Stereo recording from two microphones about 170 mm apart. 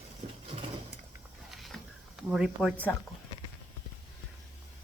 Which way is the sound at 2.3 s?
5° right (ahead or behind).